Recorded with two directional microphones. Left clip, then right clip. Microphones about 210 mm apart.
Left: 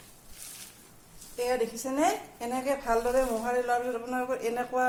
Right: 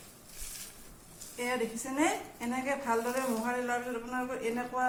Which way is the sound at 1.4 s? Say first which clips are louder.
Left 5 dB; 45° left (ahead or behind).